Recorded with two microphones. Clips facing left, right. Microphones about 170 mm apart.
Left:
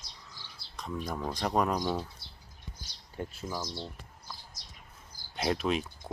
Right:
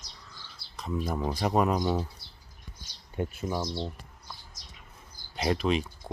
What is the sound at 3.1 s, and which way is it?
Speech, 20° right (ahead or behind).